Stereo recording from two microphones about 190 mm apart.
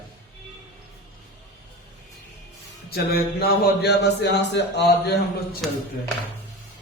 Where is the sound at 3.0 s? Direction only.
55° left (ahead or behind).